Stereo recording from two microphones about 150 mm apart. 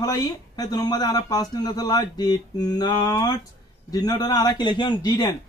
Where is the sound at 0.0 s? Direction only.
25° left (ahead or behind).